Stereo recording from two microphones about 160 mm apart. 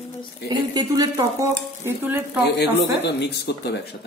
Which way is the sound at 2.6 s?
90° left.